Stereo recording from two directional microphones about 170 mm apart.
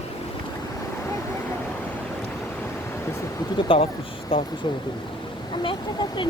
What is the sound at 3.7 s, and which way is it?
Speech, 30° left (ahead or behind).